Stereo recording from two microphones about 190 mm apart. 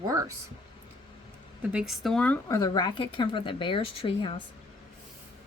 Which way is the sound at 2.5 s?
20° left (ahead or behind).